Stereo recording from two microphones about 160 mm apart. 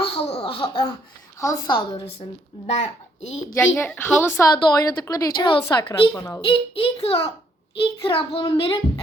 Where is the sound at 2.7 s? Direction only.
45° left (ahead or behind).